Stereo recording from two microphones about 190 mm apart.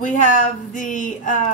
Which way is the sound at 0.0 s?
40° left (ahead or behind).